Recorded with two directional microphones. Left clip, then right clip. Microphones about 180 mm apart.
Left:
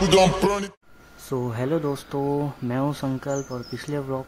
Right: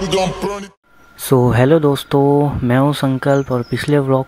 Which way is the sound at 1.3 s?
45° right (ahead or behind).